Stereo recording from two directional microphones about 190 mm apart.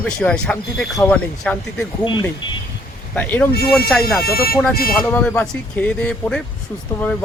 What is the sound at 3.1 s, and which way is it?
Speech, 10° left (ahead or behind).